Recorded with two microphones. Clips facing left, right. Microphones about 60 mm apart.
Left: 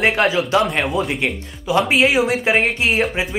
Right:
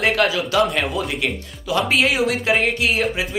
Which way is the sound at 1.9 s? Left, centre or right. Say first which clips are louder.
Left 3 dB; centre.